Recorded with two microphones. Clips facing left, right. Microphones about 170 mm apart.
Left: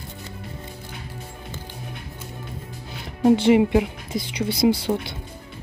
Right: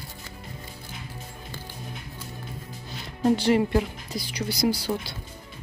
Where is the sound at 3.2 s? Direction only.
20° left (ahead or behind).